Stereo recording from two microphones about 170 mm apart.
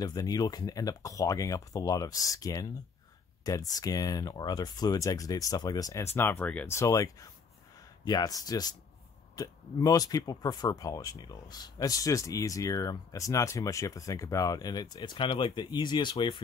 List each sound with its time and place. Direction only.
0.0 s speech: 25° left (ahead or behind)